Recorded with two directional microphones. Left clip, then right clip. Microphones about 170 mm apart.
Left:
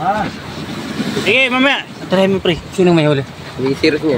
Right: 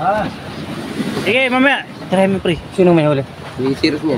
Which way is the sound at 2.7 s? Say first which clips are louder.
Right 1 dB; 10° left (ahead or behind).